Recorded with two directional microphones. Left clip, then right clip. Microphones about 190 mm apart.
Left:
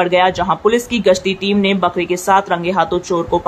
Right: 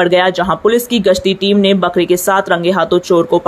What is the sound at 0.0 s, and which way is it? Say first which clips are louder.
Speech: right 2 dB; 20° right (ahead or behind).